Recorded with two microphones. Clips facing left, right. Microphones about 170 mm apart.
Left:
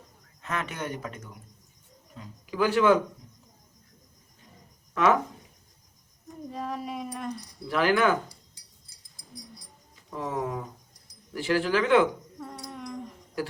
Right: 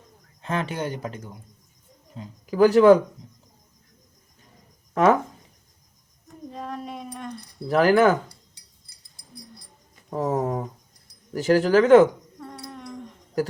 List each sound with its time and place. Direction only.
0.4 s speech: 30° right (ahead or behind)
5.0 s speech: 40° right (ahead or behind)
6.5 s a sound: 5° left (ahead or behind)
7.7 s speech: 40° right (ahead or behind)
9.1 s music: 60° right (ahead or behind)
10.1 s speech: 40° right (ahead or behind)
13.4 s speech: 40° right (ahead or behind)